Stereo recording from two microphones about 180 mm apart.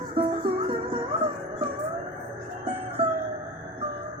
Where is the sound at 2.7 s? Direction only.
35° right (ahead or behind).